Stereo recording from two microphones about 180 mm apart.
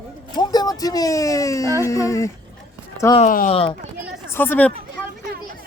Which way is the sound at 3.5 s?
30° left (ahead or behind).